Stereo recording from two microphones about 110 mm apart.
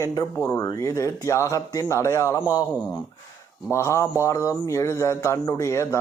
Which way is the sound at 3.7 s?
25° left (ahead or behind).